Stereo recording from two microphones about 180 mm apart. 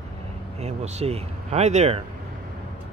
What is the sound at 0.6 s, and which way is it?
Speech, 35° right (ahead or behind).